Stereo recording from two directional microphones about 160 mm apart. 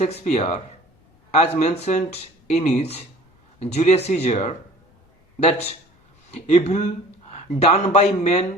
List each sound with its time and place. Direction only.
0.0 s speech: 40° left (ahead or behind)